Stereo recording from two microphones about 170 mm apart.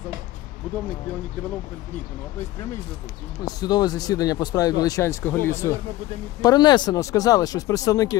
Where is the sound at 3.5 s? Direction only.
25° left (ahead or behind).